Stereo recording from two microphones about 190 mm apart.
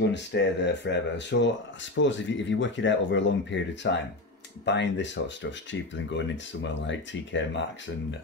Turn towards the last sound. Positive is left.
turn(degrees=75)  # may be behind; listen again after turning